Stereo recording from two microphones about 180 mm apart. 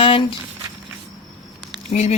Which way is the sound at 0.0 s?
30° left (ahead or behind).